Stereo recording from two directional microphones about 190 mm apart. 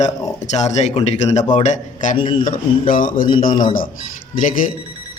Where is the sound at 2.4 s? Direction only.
45° left (ahead or behind).